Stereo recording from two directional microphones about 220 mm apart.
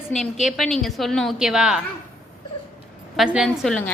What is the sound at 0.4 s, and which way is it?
A woman's voice, centre (ahead or behind).